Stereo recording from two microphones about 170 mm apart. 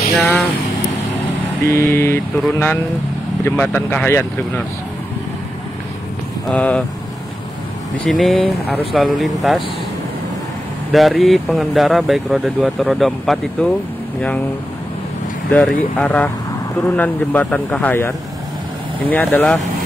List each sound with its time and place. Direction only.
0.2 s speech: centre (ahead or behind)
1.7 s speech: 15° left (ahead or behind)
6.5 s speech: 10° left (ahead or behind)
8.0 s speech: centre (ahead or behind)
10.9 s speech: centre (ahead or behind)
15.5 s speech: 10° left (ahead or behind)